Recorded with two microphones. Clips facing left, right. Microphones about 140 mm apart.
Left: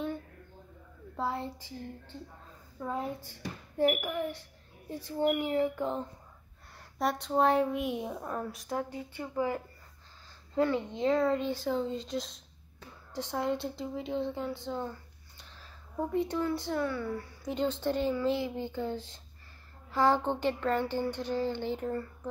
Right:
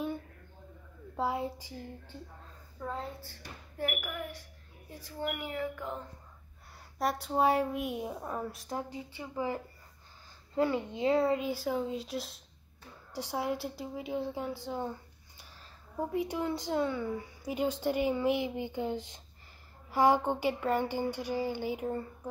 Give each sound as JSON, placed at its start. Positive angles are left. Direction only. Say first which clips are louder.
{"t": 1.1, "sound": "speech", "louder": "right 2 dB", "side_deg": -10}
{"t": 2.8, "sound": "a woman's voice", "louder": "left 4 dB", "side_deg": 15}
{"t": 3.7, "sound": "a woman's voice", "louder": "left 8 dB", "side_deg": 30}
{"t": 7.0, "sound": "speech", "louder": "left 1 dB", "side_deg": -5}
{"t": 10.5, "sound": "speech", "louder": "left 1 dB", "side_deg": -10}